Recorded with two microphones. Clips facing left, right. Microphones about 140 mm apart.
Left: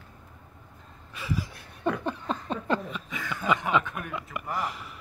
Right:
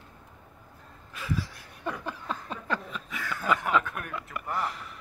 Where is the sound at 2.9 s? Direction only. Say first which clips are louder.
Left 1 dB; centre (ahead or behind).